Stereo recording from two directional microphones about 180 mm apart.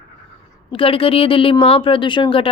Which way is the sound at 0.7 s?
30° left (ahead or behind).